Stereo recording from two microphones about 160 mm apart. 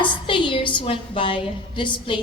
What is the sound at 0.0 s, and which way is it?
A woman's voice, 30° left (ahead or behind).